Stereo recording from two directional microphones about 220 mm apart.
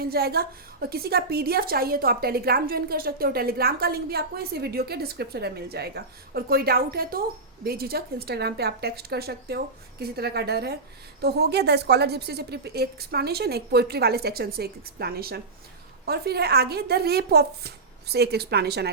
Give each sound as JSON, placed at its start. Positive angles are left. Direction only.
{"t": 0.0, "sound": "a woman's voice", "side_deg": -45}